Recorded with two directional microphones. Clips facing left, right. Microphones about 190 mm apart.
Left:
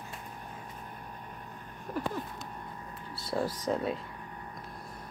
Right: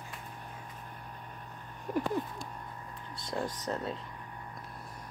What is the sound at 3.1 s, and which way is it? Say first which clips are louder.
Speech: left 4 dB; 5° left (ahead or behind).